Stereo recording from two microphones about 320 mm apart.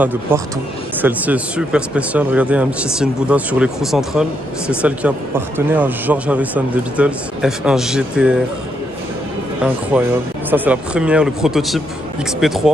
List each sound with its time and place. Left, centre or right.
0.0 s speech: centre
9.9 s speech: centre